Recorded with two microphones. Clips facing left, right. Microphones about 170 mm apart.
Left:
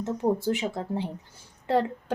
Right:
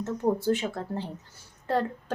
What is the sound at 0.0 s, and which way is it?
A woman's voice, 15° left (ahead or behind).